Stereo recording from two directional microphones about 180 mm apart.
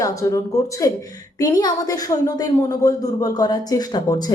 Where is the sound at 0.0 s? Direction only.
20° left (ahead or behind).